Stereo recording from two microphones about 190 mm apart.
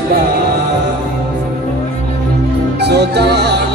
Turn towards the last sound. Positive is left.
turn(degrees=-60)  # may be behind; listen again after turning